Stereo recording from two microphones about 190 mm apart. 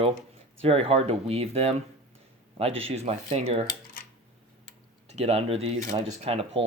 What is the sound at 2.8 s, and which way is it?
Speech, 35° right (ahead or behind).